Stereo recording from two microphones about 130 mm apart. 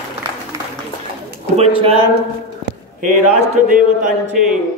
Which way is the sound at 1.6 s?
50° right (ahead or behind).